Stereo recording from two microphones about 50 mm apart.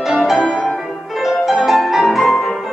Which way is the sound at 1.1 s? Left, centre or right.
Centre.